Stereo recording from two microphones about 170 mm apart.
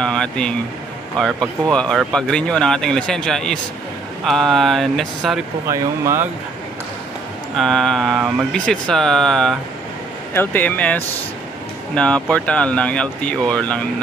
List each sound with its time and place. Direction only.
0.0 s speech: 5° left (ahead or behind)
5.7 s speech: 15° right (ahead or behind)
7.5 s speech: centre (ahead or behind)